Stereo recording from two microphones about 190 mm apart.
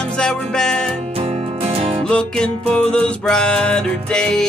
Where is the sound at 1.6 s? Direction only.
30° right (ahead or behind).